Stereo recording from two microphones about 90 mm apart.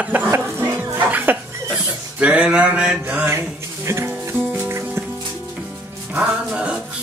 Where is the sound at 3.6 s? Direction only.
30° right (ahead or behind); by 6.9 s 10° right (ahead or behind).